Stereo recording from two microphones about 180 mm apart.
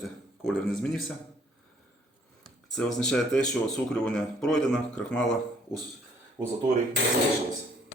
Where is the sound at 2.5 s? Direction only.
5° left (ahead or behind).